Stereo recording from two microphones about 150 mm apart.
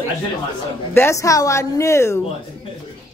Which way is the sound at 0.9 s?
20° left (ahead or behind).